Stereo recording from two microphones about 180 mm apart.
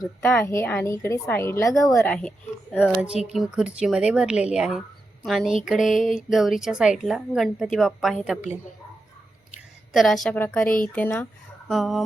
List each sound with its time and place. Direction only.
0.2 s a woman's voice: 15° left (ahead or behind)
2.0 s speech: 5° left (ahead or behind)
9.5 s a sound: centre (ahead or behind)
10.3 s a woman's voice: 10° left (ahead or behind)